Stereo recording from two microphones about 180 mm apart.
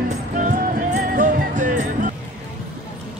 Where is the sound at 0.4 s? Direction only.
45° right (ahead or behind).